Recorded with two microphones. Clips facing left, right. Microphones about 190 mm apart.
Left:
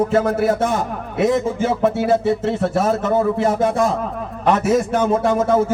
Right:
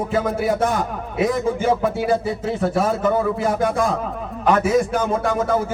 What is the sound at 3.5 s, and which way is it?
Speech, 25° left (ahead or behind).